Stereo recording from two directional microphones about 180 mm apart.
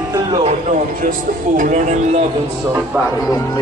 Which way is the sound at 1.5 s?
45° right (ahead or behind).